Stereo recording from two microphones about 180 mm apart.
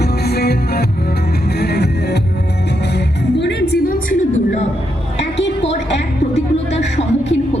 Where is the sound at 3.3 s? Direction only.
75° left (ahead or behind).